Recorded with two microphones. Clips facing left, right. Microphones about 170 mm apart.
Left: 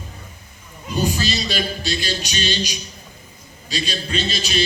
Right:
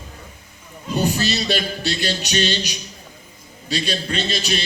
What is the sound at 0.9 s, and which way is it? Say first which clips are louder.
A man's voice: right 1 dB; 60° right (ahead or behind).